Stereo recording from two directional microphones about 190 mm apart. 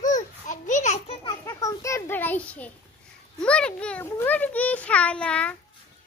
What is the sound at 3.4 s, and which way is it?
A child's voice, 5° left (ahead or behind).